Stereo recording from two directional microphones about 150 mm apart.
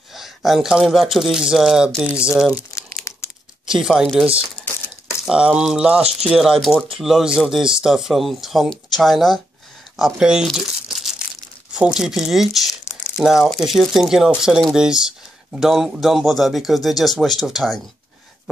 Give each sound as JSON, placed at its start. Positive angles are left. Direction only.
{"t": 0.1, "sound": "speech", "side_deg": 0}
{"t": 2.5, "sound": "crumpling", "side_deg": 20}
{"t": 3.6, "sound": "speech", "side_deg": -5}
{"t": 9.9, "sound": "crumpling", "side_deg": -5}
{"t": 11.7, "sound": "speech", "side_deg": -5}